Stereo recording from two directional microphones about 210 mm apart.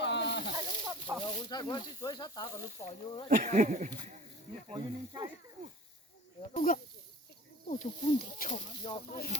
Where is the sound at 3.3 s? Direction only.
40° right (ahead or behind).